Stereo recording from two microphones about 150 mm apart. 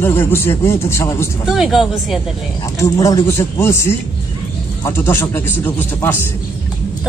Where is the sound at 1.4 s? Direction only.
Centre (ahead or behind).